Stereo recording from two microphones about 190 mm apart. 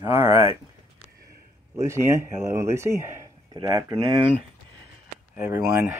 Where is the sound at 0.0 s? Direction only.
15° right (ahead or behind).